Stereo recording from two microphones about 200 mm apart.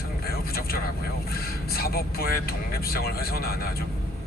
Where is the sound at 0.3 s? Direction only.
50° left (ahead or behind).